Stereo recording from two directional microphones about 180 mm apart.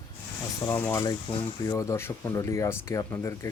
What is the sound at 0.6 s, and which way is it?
Speech, 15° left (ahead or behind).